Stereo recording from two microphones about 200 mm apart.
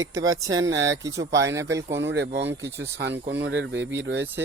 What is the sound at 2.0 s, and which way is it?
Speech, 65° right (ahead or behind).